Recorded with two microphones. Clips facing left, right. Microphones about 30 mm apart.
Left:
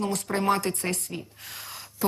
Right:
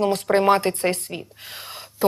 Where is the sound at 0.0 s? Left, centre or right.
Right.